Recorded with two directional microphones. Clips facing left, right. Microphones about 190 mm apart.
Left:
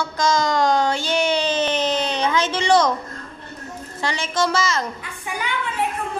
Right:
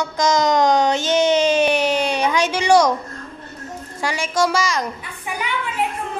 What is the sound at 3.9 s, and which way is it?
Speech, 10° right (ahead or behind).